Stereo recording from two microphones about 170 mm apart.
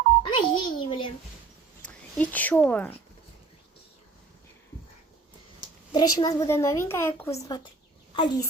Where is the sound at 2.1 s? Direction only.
10° left (ahead or behind).